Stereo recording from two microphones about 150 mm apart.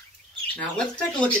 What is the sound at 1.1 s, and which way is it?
Speech, 5° left (ahead or behind).